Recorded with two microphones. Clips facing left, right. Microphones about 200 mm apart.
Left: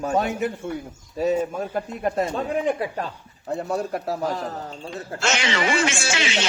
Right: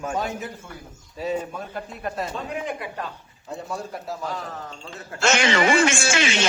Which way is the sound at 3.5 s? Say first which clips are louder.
Left 7 dB; 65° left (ahead or behind).